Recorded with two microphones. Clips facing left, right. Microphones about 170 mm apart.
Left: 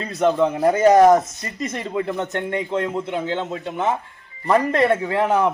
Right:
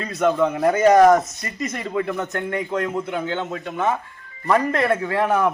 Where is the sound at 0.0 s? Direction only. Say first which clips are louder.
Left 1 dB; 30° left (ahead or behind).